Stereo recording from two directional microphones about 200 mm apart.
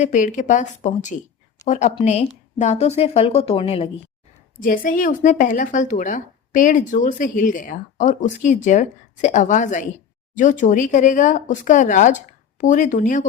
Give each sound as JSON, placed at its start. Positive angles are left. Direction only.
{"t": 0.0, "sound": "a woman's voice", "side_deg": 40}
{"t": 4.6, "sound": "speech", "side_deg": 45}